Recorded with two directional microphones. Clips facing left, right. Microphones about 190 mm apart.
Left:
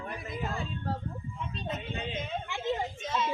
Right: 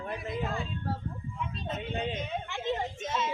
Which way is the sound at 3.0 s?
20° right (ahead or behind).